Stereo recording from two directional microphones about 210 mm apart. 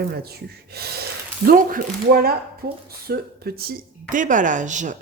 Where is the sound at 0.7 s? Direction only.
50° right (ahead or behind).